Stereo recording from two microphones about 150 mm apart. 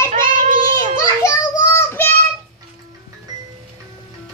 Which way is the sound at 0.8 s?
20° left (ahead or behind).